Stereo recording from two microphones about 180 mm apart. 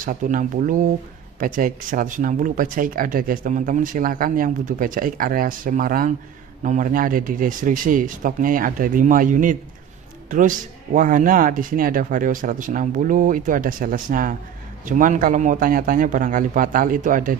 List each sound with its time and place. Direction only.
0.0 s speech: 50° right (ahead or behind)